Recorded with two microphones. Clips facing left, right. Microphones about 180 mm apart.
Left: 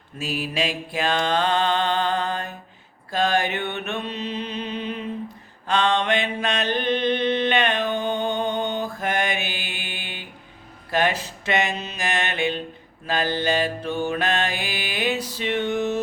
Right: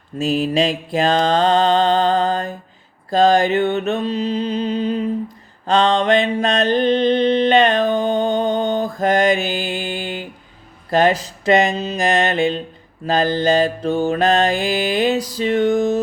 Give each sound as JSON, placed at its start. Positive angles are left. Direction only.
{"t": 0.3, "sound": "mantra", "side_deg": 10}
{"t": 0.5, "sound": "mantra", "side_deg": -35}